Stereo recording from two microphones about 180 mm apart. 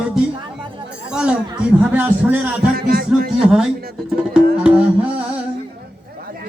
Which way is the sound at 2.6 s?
60° right (ahead or behind).